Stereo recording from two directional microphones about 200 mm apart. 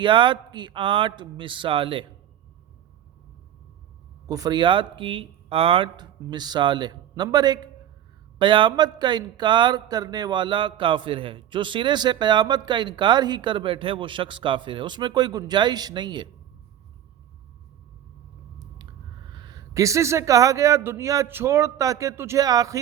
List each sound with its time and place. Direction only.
0.0 s speech: 25° right (ahead or behind)
4.3 s speech: 20° right (ahead or behind)
19.3 s speech: 20° right (ahead or behind)